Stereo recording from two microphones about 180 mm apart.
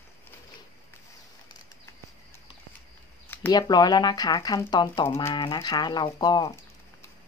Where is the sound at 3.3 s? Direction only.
15° left (ahead or behind).